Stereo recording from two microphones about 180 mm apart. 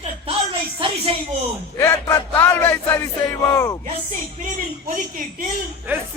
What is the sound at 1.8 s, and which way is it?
Speech, 15° left (ahead or behind).